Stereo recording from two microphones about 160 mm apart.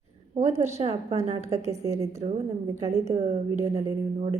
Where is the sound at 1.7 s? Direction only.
20° right (ahead or behind).